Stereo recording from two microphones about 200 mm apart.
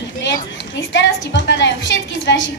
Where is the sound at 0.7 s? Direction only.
65° left (ahead or behind).